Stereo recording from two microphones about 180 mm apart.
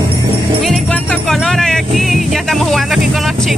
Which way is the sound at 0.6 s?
5° left (ahead or behind).